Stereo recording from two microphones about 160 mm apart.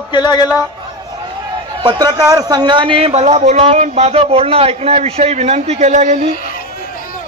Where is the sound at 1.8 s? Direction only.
25° right (ahead or behind); by 6.2 s 50° right (ahead or behind).